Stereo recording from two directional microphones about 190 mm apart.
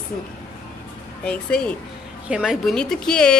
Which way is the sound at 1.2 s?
5° left (ahead or behind).